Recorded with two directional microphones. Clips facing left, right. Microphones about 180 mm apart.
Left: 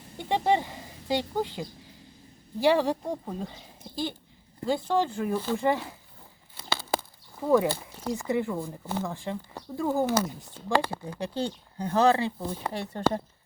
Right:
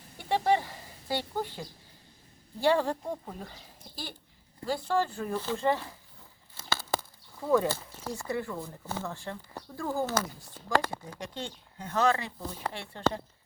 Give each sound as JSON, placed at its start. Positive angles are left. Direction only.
{"t": 0.2, "sound": "a sound", "side_deg": 20}
{"t": 2.6, "sound": "speech", "side_deg": 10}
{"t": 6.6, "sound": "a sound", "side_deg": 15}
{"t": 7.5, "sound": "speech", "side_deg": 15}
{"t": 11.2, "sound": "speech", "side_deg": 35}
{"t": 12.7, "sound": "speech", "side_deg": 40}